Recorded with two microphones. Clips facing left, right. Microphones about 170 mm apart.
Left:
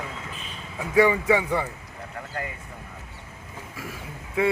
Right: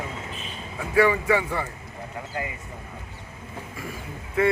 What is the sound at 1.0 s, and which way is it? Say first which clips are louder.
Speech: left 1 dB; 20° left (ahead or behind).